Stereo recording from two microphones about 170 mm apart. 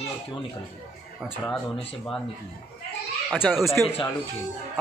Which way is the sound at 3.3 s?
Centre (ahead or behind).